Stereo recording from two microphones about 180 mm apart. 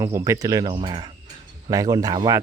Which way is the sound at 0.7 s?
30° right (ahead or behind).